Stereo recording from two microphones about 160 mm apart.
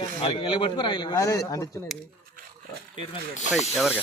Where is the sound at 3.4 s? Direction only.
45° left (ahead or behind).